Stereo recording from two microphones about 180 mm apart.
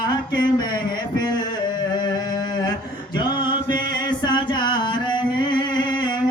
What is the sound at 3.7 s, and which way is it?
Music, 25° left (ahead or behind).